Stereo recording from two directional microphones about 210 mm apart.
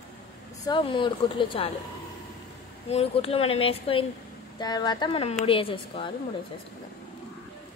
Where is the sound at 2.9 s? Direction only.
30° left (ahead or behind).